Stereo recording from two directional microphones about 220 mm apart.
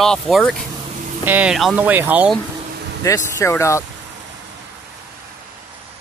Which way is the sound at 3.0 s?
15° left (ahead or behind).